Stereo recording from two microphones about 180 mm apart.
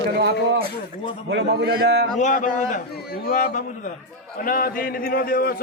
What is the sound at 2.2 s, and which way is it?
A man's voice, 45° left (ahead or behind).